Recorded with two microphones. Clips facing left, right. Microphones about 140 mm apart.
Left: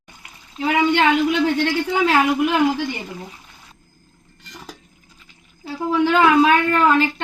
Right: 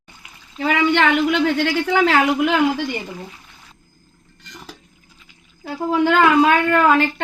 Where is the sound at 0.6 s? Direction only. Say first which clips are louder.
Even; 90° right.